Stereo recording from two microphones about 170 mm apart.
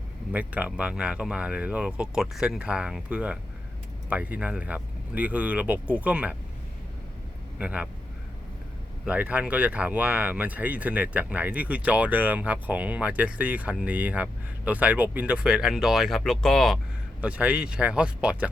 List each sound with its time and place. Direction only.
0.3 s speech: 10° right (ahead or behind)
7.6 s speech: 5° right (ahead or behind)
9.0 s speech: 10° right (ahead or behind)
17.2 s speech: 10° right (ahead or behind)